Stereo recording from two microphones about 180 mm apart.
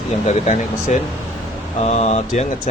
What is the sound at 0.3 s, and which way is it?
Speech, 40° left (ahead or behind).